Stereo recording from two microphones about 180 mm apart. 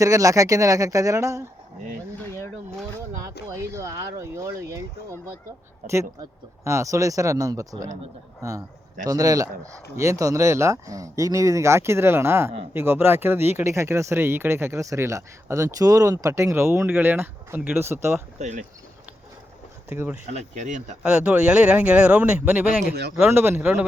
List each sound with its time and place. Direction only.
0.0 s speech: 20° right (ahead or behind)
3.4 s speech: 15° right (ahead or behind)
5.9 s a man's voice: 15° right (ahead or behind)
18.3 s speech: 40° right (ahead or behind)
19.9 s speech: 10° right (ahead or behind)
20.3 s speech: 40° right (ahead or behind)
21.0 s speech: 5° right (ahead or behind)